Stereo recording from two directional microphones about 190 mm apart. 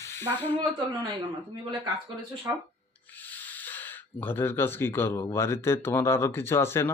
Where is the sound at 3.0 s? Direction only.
10° left (ahead or behind).